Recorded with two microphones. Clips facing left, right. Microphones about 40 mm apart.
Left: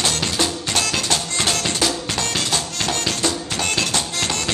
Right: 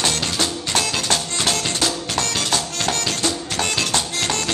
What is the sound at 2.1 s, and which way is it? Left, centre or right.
Music, right.